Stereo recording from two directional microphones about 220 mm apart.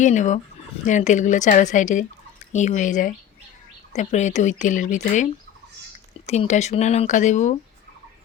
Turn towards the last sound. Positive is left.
turn(degrees=35)  # may be behind; listen again after turning